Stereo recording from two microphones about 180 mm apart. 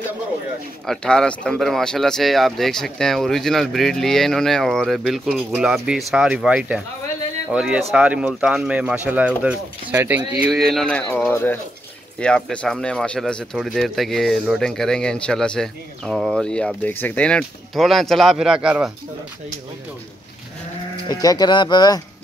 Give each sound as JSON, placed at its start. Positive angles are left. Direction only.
{"t": 0.8, "sound": "speech", "side_deg": 5}
{"t": 21.1, "sound": "speech", "side_deg": 20}